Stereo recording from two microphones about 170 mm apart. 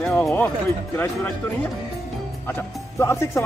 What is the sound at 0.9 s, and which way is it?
Speech, 10° left (ahead or behind).